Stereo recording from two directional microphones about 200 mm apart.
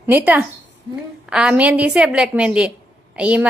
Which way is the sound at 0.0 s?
10° right (ahead or behind).